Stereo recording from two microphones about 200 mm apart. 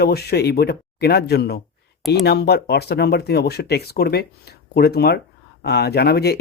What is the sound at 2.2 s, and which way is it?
Speech, 55° left (ahead or behind).